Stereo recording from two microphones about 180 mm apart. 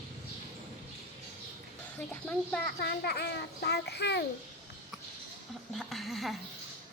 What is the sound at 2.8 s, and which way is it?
A child's voice, 65° left (ahead or behind).